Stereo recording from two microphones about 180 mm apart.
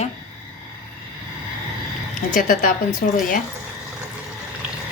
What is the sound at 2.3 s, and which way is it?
Speech, 45° left (ahead or behind).